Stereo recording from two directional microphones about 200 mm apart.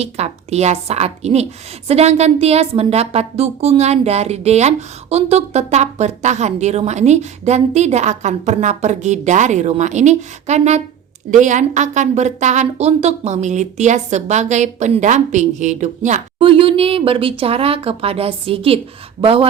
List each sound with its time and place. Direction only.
0.0 s a woman's voice: 30° right (ahead or behind)